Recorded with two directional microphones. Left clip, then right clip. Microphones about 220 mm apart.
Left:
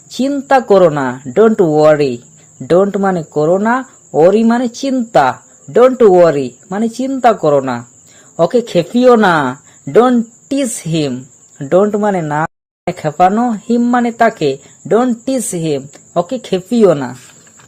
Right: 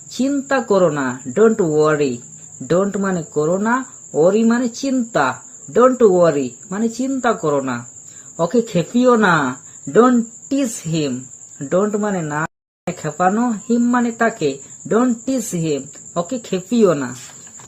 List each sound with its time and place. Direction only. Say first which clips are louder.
0.1 s speech: left 7 dB; 40° left (ahead or behind)